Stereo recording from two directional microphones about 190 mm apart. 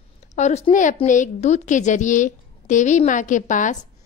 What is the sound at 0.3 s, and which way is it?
Speech, 35° left (ahead or behind).